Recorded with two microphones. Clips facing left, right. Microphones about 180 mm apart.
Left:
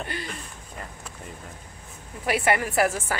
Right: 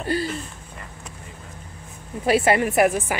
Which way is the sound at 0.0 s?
35° right (ahead or behind).